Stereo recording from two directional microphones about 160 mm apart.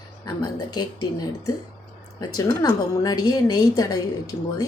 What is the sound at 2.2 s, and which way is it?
A woman's voice, 25° left (ahead or behind).